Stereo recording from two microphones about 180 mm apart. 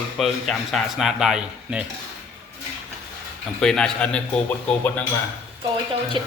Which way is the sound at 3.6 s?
5° left (ahead or behind).